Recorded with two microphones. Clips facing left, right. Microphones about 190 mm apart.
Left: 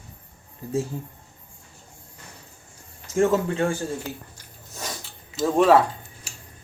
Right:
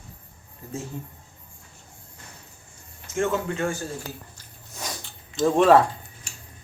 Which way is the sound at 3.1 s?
35° left (ahead or behind).